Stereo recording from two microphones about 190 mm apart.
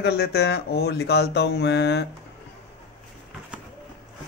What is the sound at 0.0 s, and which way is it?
Mantra, 60° left (ahead or behind).